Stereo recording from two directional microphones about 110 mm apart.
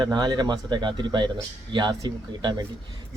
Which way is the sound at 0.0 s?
40° right (ahead or behind).